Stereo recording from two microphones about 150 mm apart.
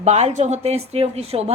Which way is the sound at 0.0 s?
50° right (ahead or behind).